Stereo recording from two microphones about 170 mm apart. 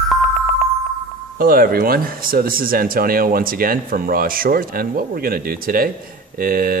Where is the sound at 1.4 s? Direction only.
60° right (ahead or behind).